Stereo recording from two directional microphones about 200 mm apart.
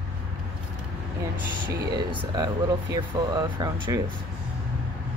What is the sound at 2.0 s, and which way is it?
Speech, 20° right (ahead or behind).